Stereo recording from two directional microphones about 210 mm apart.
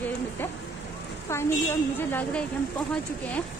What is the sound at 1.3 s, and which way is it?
A woman's voice, 10° left (ahead or behind).